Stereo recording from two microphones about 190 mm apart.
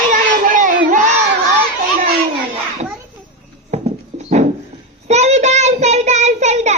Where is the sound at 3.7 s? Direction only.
35° right (ahead or behind).